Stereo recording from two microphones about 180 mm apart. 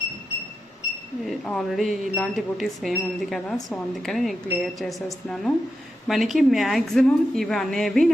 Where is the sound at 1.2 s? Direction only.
Centre (ahead or behind).